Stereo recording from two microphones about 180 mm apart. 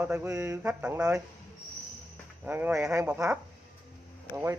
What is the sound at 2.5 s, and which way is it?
Speech, 5° right (ahead or behind).